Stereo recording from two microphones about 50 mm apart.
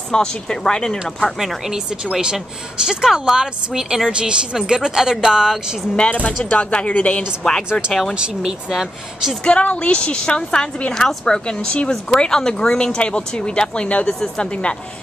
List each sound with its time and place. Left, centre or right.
0.1 s speech: centre
1.6 s a woman's voice: centre
5.9 s a woman's voice: left
7.4 s speech: centre
8.1 s a woman's voice: centre
9.4 s a woman's voice: left